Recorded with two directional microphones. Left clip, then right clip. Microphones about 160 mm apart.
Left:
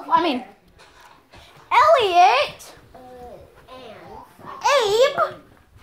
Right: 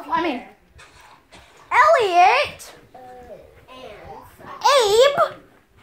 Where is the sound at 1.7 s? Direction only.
20° right (ahead or behind).